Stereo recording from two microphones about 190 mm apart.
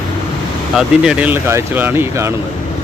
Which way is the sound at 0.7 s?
5° right (ahead or behind).